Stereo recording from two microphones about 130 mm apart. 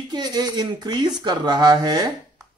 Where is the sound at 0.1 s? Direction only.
35° right (ahead or behind).